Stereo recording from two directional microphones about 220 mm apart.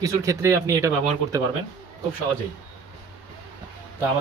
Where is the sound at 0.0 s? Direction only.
15° right (ahead or behind).